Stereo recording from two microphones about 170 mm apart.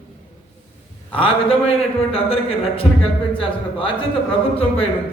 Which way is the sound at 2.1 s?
35° left (ahead or behind).